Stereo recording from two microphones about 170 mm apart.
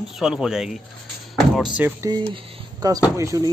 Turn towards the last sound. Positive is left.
turn(degrees=-20)  # may be behind; listen again after turning